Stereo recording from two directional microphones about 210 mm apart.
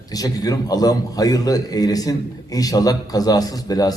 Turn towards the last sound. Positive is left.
turn(degrees=15)  # may be behind; listen again after turning